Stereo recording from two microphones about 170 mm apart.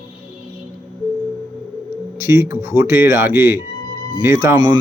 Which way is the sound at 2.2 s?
15° right (ahead or behind).